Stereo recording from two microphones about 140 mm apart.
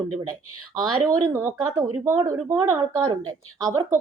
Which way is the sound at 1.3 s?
20° right (ahead or behind).